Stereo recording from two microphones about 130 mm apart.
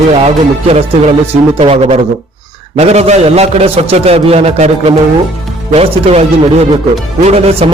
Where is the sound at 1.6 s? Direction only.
50° right (ahead or behind).